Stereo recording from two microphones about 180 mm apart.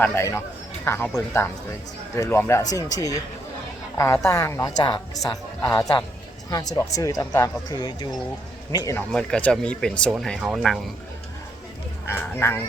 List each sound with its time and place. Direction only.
0.0 s a woman's voice: 15° left (ahead or behind)
3.9 s a woman's voice: 15° left (ahead or behind)
4.8 s speech: 25° left (ahead or behind)
9.0 s speech: 5° left (ahead or behind)
12.0 s a woman's voice: 15° left (ahead or behind)